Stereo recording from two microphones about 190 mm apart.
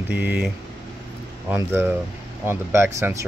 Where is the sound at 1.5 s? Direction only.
10° right (ahead or behind).